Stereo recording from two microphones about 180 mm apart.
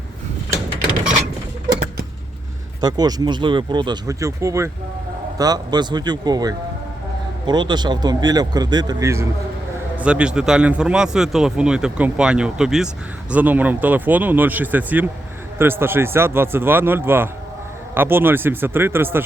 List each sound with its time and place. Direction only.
2.8 s speech: 20° right (ahead or behind)
10.0 s speech: 5° right (ahead or behind)